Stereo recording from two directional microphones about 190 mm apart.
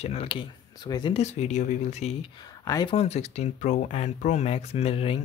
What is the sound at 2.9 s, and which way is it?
Speech, 30° left (ahead or behind).